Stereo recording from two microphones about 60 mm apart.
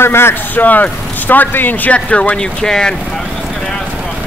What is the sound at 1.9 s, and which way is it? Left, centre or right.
Speech, centre.